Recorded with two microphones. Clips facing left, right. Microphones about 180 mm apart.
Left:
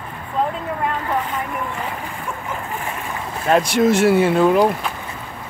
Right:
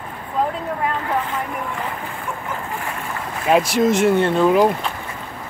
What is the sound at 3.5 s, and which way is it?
Speech, centre (ahead or behind).